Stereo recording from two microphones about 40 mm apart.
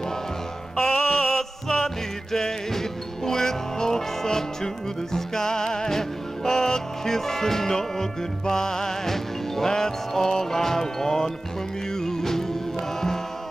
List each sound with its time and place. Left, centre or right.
0.7 s music: centre